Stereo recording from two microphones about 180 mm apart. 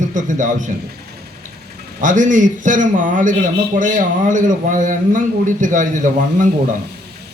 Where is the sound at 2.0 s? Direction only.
45° right (ahead or behind).